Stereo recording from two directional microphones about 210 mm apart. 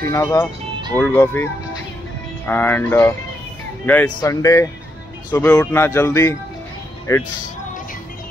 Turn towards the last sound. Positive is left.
turn(degrees=15)  # may be behind; listen again after turning